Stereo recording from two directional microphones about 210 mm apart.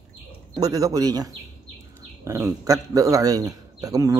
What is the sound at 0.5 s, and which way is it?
A man's voice, 15° right (ahead or behind).